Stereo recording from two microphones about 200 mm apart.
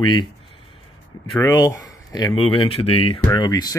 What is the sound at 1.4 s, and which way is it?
Speech, 15° left (ahead or behind).